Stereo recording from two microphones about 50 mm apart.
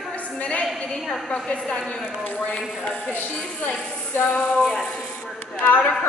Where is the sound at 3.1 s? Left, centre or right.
Left.